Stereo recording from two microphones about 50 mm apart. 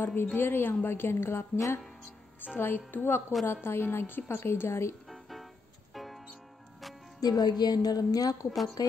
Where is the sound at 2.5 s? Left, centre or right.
Left.